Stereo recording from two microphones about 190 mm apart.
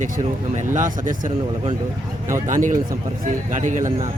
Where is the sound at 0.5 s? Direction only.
40° right (ahead or behind).